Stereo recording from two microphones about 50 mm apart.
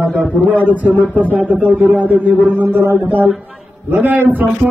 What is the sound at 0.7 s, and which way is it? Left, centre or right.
A man's voice, right.